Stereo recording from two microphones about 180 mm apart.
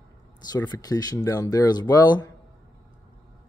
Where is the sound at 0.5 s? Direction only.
20° left (ahead or behind).